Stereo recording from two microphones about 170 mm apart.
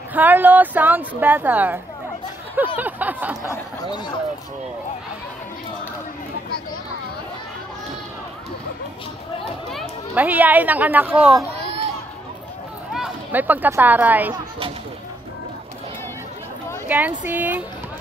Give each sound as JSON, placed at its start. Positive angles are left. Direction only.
{"t": 0.1, "sound": "speech", "side_deg": -10}
{"t": 2.8, "sound": "a sound", "side_deg": -10}
{"t": 3.4, "sound": "speech", "side_deg": 25}
{"t": 10.1, "sound": "speech", "side_deg": -10}
{"t": 12.9, "sound": "speech", "side_deg": -5}
{"t": 16.8, "sound": "speech", "side_deg": -10}